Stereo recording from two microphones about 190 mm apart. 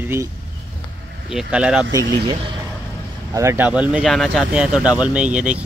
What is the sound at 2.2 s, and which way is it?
Speech, 25° right (ahead or behind).